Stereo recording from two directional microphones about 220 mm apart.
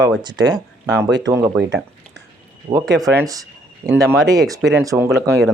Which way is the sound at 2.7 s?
25° right (ahead or behind).